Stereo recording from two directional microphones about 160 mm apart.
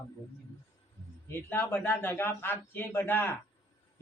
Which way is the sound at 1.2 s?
15° left (ahead or behind).